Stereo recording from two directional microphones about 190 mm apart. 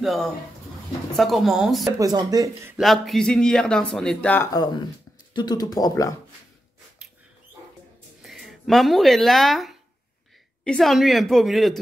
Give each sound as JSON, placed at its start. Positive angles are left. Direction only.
{"t": 0.0, "sound": "speech", "side_deg": 0}
{"t": 2.0, "sound": "speech", "side_deg": -20}
{"t": 2.8, "sound": "speech", "side_deg": 0}
{"t": 4.5, "sound": "speech", "side_deg": 20}
{"t": 8.2, "sound": "speech", "side_deg": 0}